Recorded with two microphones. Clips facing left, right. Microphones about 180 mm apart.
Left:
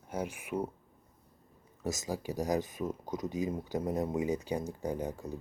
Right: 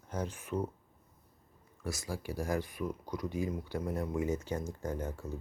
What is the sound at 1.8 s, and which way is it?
Speech, 20° left (ahead or behind).